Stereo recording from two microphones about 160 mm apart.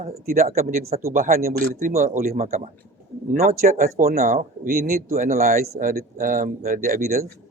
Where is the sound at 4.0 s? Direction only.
70° right (ahead or behind).